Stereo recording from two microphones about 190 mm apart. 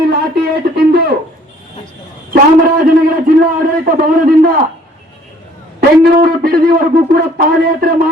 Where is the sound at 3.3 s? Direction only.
50° right (ahead or behind).